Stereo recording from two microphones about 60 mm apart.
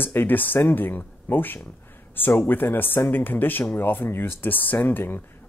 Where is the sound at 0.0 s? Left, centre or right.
Left.